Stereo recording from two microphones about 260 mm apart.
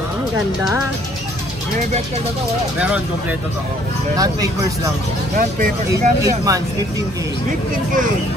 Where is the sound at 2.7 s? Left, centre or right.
Centre.